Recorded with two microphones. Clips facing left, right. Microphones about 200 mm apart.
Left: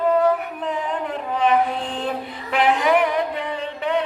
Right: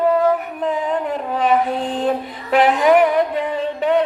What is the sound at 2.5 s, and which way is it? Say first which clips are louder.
Female singing: right 5 dB; 40° right (ahead or behind).